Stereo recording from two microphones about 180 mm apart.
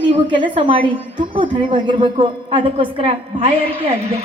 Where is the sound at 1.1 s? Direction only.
50° right (ahead or behind).